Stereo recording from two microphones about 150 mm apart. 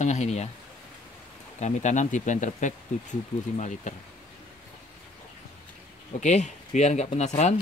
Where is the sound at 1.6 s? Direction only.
55° left (ahead or behind).